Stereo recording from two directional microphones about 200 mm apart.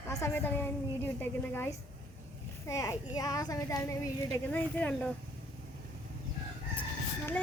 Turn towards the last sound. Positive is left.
turn(degrees=10)  # may be behind; listen again after turning